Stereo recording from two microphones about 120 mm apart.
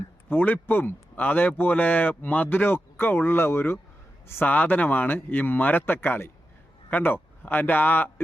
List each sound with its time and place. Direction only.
0.3 s speech: 15° left (ahead or behind)